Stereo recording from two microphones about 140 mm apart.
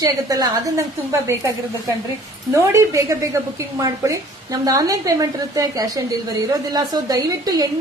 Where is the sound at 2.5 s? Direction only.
20° right (ahead or behind).